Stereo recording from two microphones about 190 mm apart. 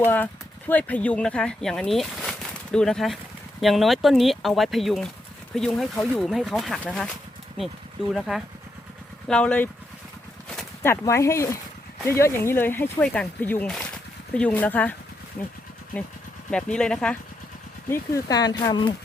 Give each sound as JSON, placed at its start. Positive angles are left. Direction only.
{"t": 0.0, "sound": "speech", "side_deg": 10}
{"t": 9.2, "sound": "speech", "side_deg": 5}
{"t": 10.8, "sound": "speech", "side_deg": 15}
{"t": 16.5, "sound": "speech", "side_deg": 5}